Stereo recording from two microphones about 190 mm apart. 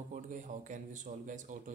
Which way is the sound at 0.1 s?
40° right (ahead or behind).